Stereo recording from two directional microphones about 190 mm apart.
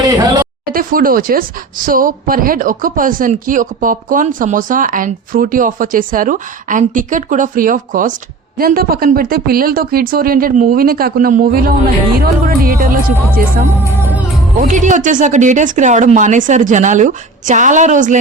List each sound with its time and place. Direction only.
0.0 s a sound: 20° right (ahead or behind)
0.7 s speech: 50° right (ahead or behind)
14.6 s speech: 40° right (ahead or behind)